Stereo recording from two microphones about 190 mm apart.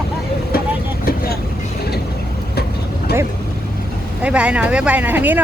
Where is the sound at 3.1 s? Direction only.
55° left (ahead or behind).